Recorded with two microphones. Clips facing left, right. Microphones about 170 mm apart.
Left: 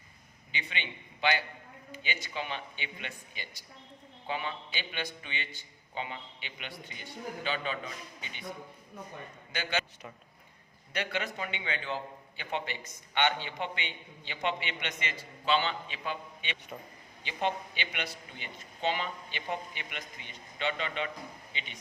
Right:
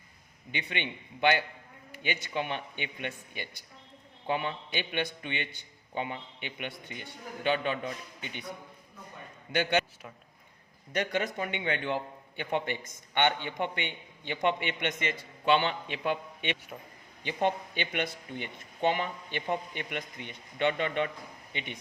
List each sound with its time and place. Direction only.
0.5 s a man's voice: 55° right (ahead or behind)
10.9 s a man's voice: 45° right (ahead or behind)